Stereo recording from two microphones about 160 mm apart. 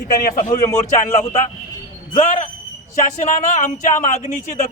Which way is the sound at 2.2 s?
50° left (ahead or behind).